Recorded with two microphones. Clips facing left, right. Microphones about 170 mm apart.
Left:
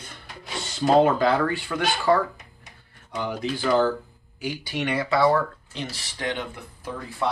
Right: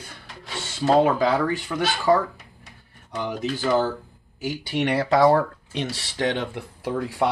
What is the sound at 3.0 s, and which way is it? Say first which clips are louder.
Speech: right 1 dB; 15° right (ahead or behind).